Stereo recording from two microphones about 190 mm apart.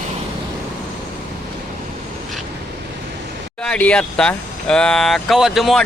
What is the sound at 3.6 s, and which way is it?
Speech, 5° left (ahead or behind).